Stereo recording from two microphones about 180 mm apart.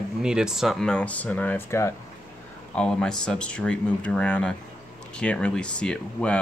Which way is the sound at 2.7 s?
5° left (ahead or behind).